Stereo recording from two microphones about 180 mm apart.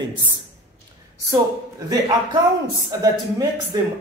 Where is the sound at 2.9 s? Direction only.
20° right (ahead or behind).